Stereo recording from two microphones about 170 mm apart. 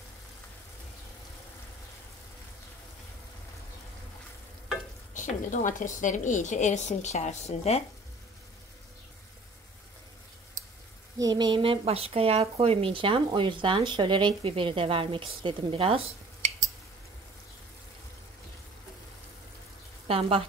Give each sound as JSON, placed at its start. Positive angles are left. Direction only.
{"t": 5.1, "sound": "a woman's voice", "side_deg": 50}
{"t": 11.1, "sound": "speech", "side_deg": -25}
{"t": 20.1, "sound": "speech", "side_deg": -35}